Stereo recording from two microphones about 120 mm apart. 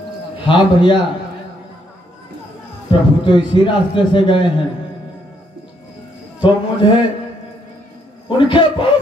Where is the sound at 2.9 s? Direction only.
40° left (ahead or behind).